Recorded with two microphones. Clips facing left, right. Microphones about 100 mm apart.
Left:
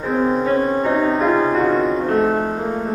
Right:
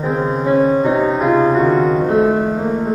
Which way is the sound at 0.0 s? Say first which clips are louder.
Even; 10° right (ahead or behind).